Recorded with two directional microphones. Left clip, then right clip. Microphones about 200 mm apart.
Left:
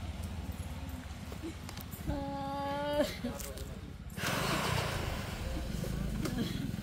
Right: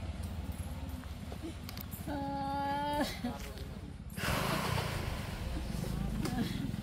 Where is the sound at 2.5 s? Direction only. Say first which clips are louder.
Left 2 dB; 10° right (ahead or behind).